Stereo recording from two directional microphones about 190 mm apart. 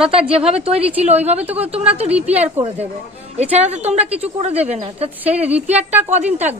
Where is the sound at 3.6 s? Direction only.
35° right (ahead or behind).